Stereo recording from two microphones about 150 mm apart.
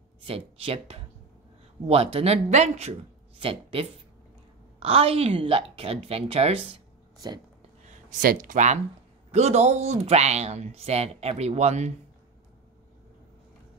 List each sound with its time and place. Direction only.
0.3 s a woman's voice: 40° right (ahead or behind)
8.2 s speech: 65° right (ahead or behind)
9.3 s speech: 45° right (ahead or behind)